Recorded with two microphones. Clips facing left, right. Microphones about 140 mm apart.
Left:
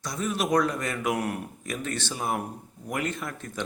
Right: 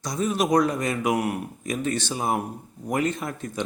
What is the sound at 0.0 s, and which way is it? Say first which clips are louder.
A man's voice: right 4 dB; 20° right (ahead or behind).